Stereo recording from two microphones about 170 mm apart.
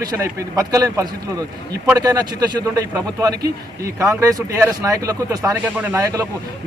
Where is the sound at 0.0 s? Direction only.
20° right (ahead or behind).